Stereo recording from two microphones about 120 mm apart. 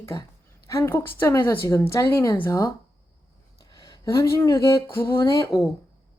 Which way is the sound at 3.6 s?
30° left (ahead or behind).